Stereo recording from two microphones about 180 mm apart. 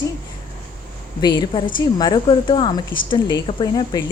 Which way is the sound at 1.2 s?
25° left (ahead or behind).